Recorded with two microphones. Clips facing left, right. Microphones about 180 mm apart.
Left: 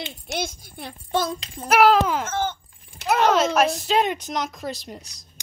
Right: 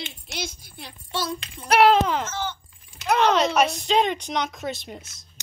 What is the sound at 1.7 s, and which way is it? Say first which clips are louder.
Speech: even; 5° left (ahead or behind).